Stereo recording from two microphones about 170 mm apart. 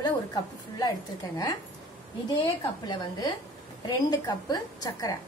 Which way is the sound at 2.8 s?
25° left (ahead or behind).